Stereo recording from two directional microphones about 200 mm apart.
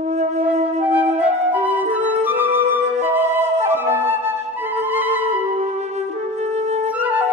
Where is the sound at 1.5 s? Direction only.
10° right (ahead or behind).